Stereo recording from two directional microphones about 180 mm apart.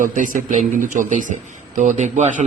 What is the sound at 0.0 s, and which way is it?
A man's voice, 50° right (ahead or behind).